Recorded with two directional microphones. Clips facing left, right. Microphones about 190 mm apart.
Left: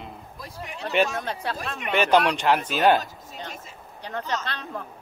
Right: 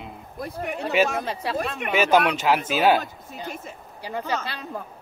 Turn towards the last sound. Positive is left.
turn(degrees=-10)  # may be behind; listen again after turning